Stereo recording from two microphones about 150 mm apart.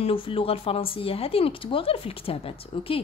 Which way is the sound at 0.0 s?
35° left (ahead or behind).